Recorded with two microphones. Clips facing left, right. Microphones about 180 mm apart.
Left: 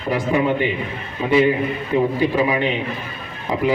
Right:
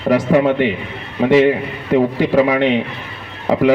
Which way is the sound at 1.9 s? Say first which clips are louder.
Right 6 dB; 90° right.